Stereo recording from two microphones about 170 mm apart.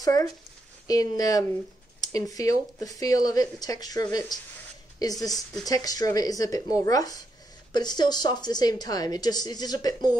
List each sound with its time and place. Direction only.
0.0 s speech: 20° left (ahead or behind)
5.7 s speech: 20° left (ahead or behind)